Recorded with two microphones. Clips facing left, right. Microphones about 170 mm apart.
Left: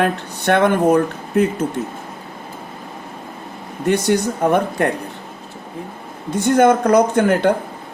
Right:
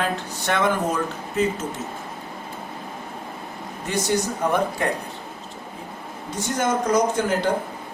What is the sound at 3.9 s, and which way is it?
Speech, 60° left (ahead or behind).